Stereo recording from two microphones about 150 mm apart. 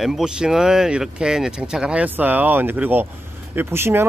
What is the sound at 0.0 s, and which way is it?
Speech, 5° right (ahead or behind).